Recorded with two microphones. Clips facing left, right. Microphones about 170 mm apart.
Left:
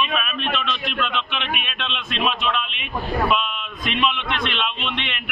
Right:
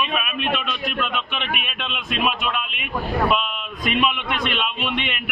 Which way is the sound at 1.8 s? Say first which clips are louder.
Right 2 dB; 5° right (ahead or behind).